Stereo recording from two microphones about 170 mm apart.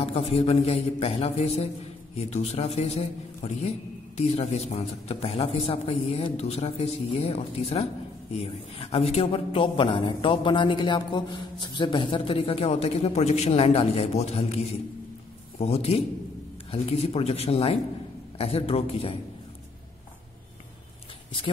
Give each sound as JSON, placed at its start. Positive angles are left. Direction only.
{"t": 0.0, "sound": "a man's voice", "side_deg": 35}